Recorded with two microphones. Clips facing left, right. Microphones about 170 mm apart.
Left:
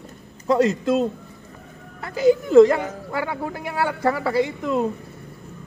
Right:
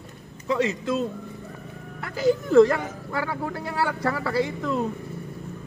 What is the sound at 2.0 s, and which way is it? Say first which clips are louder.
Speech: left 4 dB; 20° left (ahead or behind).